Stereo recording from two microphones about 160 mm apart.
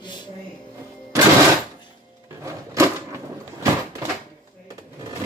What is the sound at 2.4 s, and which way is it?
Drawer open or close, 20° right (ahead or behind).